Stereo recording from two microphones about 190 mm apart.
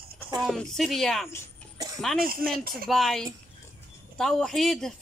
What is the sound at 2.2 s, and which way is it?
Speech, 50° right (ahead or behind).